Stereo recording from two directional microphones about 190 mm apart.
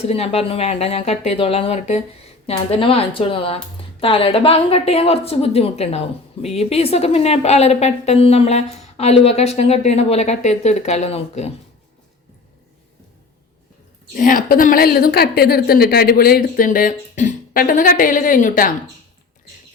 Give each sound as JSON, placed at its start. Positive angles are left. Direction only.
{"t": 0.0, "sound": "a woman's voice", "side_deg": 30}
{"t": 14.1, "sound": "a woman's voice", "side_deg": 45}